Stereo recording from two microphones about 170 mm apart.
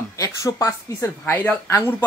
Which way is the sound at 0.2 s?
20° left (ahead or behind).